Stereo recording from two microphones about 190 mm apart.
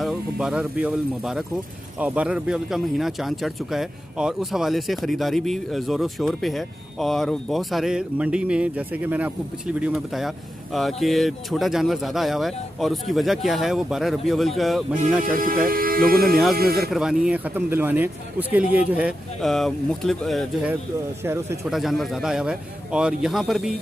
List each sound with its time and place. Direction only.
0.0 s a man's voice: 5° right (ahead or behind)
15.6 s speech: 50° right (ahead or behind)
16.9 s a man's voice: 5° right (ahead or behind)
21.2 s a man's voice: 15° right (ahead or behind)
21.6 s speech: centre (ahead or behind)